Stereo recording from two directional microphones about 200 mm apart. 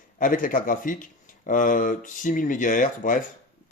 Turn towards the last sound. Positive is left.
turn(degrees=40)  # may be behind; listen again after turning